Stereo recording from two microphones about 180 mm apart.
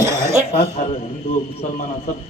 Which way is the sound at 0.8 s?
50° left (ahead or behind).